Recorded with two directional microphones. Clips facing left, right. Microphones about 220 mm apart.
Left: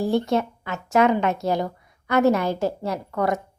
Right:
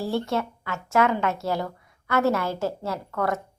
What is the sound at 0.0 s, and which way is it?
Speech, 15° left (ahead or behind).